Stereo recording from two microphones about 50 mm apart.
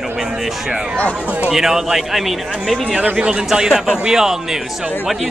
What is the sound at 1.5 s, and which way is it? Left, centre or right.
A man's voice, centre.